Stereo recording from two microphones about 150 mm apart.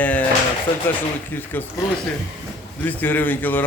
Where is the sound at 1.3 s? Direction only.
15° left (ahead or behind).